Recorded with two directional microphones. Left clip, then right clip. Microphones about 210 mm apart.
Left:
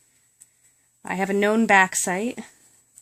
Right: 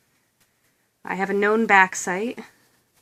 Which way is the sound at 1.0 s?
40° left (ahead or behind).